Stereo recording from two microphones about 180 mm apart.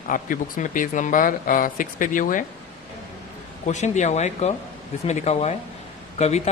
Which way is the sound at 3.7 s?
40° left (ahead or behind).